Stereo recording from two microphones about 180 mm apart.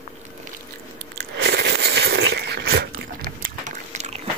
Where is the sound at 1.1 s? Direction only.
65° right (ahead or behind).